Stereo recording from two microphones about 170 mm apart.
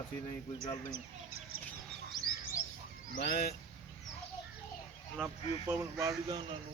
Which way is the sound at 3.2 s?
70° left (ahead or behind).